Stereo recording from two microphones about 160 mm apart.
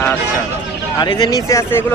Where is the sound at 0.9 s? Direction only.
25° left (ahead or behind).